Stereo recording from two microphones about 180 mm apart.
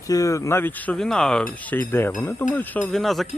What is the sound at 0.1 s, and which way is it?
Speech, 20° left (ahead or behind).